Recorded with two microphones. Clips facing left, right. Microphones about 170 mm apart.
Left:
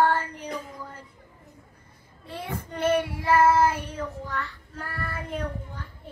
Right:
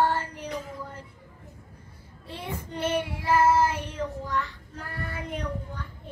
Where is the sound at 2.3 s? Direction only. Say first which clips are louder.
Left 1 dB; 50° left (ahead or behind).